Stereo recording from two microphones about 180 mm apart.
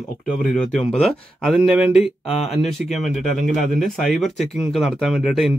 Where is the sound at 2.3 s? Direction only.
35° left (ahead or behind).